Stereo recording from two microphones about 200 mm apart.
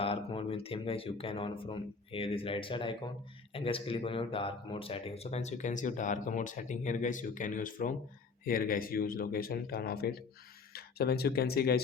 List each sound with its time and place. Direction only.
0.0 s speech: 25° left (ahead or behind); by 11.8 s 50° left (ahead or behind)